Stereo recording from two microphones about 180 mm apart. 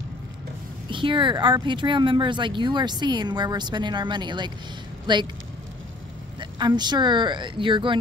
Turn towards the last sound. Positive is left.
turn(degrees=-25)  # may be behind; listen again after turning